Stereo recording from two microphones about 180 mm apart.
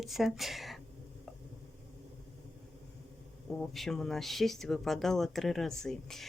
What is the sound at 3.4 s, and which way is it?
Speech, centre (ahead or behind).